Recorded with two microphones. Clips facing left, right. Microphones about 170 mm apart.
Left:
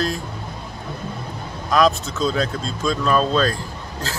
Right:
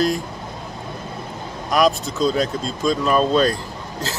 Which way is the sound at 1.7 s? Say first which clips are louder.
Even; 15° right (ahead or behind).